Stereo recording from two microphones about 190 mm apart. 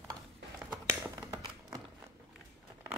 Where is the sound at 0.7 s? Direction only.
10° right (ahead or behind).